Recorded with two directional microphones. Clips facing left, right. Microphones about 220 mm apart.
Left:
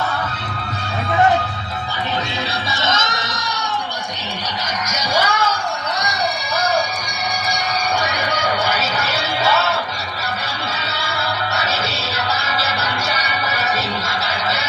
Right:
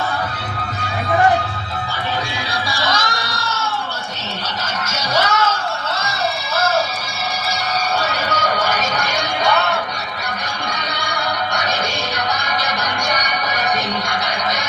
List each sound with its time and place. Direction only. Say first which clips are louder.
2.7 s music: even; 20° left (ahead or behind)
4.9 s music: right 1 dB; 10° left (ahead or behind)
8.0 s music: right 1 dB; 10° left (ahead or behind)
10.9 s music: right 1 dB; 5° left (ahead or behind)